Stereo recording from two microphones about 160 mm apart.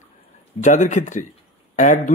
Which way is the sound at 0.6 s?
50° left (ahead or behind).